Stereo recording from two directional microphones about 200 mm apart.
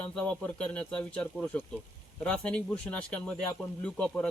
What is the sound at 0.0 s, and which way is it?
Speech, 5° left (ahead or behind).